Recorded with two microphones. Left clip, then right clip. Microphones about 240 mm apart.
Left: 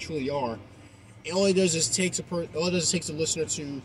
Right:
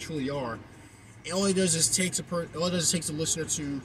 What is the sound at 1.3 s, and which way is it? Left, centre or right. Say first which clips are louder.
Speech: left 3 dB; centre.